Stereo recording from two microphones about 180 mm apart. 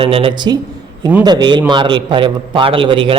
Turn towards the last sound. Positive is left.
turn(degrees=-30)  # may be behind; listen again after turning